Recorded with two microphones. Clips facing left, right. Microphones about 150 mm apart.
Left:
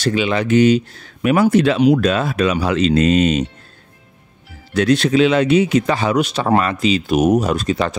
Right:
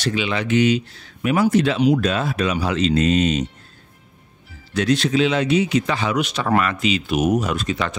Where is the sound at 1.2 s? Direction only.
65° left (ahead or behind).